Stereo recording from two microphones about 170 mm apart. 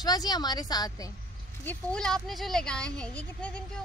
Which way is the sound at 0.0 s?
25° left (ahead or behind).